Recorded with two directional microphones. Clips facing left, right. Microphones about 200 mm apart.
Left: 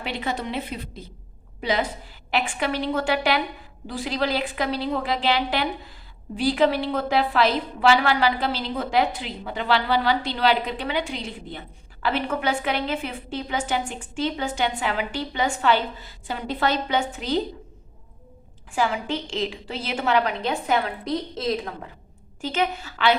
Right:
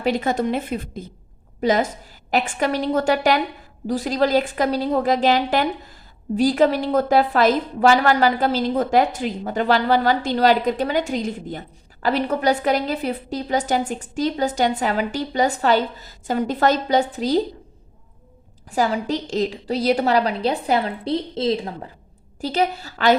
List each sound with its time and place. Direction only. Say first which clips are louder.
0.0 s a woman's voice: right 8 dB; 45° right (ahead or behind)
18.7 s a woman's voice: right 4 dB; 40° right (ahead or behind)